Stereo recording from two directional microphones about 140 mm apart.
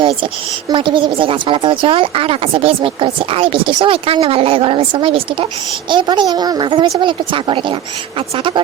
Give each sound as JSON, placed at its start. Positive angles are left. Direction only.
{"t": 0.7, "sound": "speech", "side_deg": -35}